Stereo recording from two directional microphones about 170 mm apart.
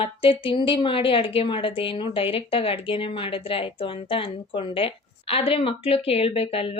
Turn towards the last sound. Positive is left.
turn(degrees=35)  # may be behind; listen again after turning